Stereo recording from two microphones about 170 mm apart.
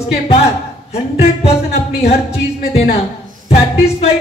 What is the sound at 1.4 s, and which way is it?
Music, 35° left (ahead or behind).